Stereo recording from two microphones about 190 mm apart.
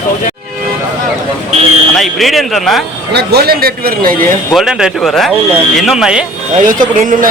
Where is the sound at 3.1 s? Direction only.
60° right (ahead or behind).